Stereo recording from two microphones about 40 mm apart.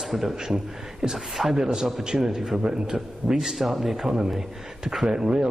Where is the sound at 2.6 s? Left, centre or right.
Right.